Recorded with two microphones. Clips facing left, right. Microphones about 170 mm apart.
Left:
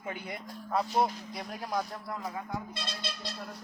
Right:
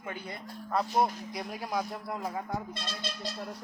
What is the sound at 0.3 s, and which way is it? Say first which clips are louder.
Speech: even; 5° left (ahead or behind).